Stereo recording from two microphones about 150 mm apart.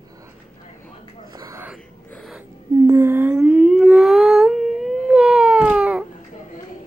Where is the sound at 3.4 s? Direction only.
5° right (ahead or behind).